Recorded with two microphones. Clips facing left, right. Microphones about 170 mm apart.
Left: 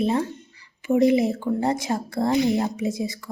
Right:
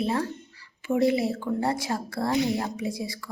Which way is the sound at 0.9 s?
20° left (ahead or behind).